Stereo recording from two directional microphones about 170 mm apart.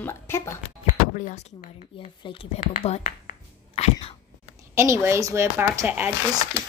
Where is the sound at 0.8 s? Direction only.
50° left (ahead or behind).